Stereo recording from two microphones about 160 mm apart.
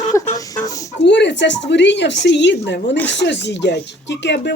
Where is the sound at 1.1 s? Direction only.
90° left.